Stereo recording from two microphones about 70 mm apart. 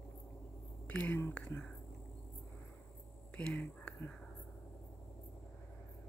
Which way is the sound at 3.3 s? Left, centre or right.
Centre.